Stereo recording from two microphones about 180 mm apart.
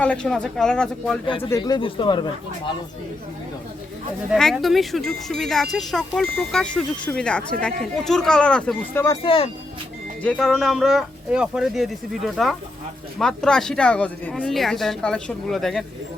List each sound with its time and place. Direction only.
0.0 s speech: 5° left (ahead or behind)
1.5 s speech: 20° left (ahead or behind)
4.3 s speech: centre (ahead or behind)
9.2 s speech: 30° left (ahead or behind)
10.2 s speech: 5° left (ahead or behind)